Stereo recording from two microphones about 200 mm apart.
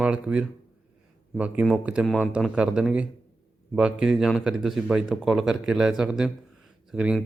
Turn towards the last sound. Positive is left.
turn(degrees=-5)  # may be behind; listen again after turning